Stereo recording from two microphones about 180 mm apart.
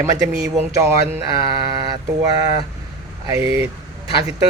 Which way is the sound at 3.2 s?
15° right (ahead or behind).